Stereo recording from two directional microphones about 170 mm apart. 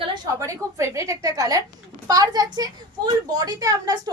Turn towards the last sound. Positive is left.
turn(degrees=-20)  # may be behind; listen again after turning